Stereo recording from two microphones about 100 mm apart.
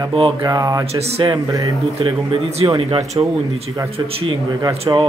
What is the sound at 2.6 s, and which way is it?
Speech, 50° right (ahead or behind).